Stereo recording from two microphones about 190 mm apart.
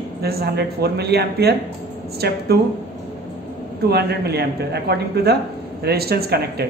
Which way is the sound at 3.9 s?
60° right (ahead or behind).